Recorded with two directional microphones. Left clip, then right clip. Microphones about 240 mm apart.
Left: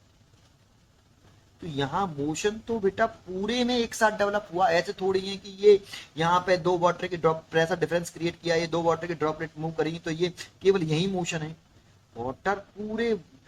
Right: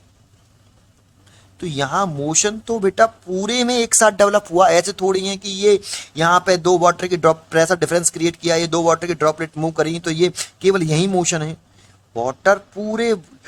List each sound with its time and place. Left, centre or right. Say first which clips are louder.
1.7 s speech: right 9 dB; right